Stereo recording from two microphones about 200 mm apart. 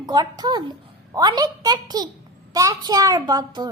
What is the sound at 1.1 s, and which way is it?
A child's voice, 20° right (ahead or behind).